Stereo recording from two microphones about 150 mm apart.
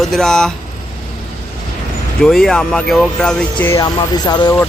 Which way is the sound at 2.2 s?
Centre (ahead or behind).